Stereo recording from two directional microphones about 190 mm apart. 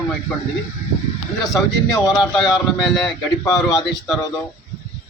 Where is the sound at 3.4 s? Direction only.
20° left (ahead or behind).